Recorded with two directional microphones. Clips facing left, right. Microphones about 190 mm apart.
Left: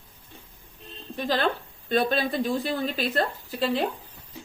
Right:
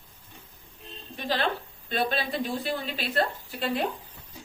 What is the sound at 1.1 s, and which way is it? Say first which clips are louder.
Speech: left 3 dB; 45° left (ahead or behind).